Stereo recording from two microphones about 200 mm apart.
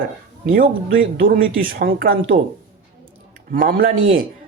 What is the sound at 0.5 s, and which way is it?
Speech, 45° right (ahead or behind).